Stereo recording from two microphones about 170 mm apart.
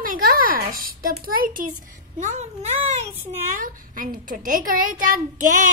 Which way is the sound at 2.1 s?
45° right (ahead or behind).